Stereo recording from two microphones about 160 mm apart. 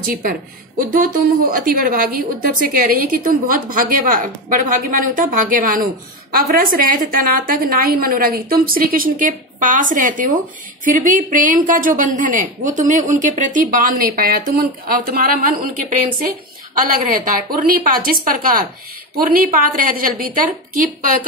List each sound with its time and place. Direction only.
0.0 s a woman's voice: 65° right (ahead or behind)